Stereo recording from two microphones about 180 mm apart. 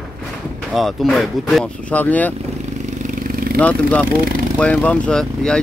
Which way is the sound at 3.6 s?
5° left (ahead or behind).